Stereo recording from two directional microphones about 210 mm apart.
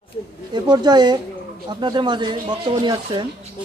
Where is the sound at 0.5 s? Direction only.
20° right (ahead or behind).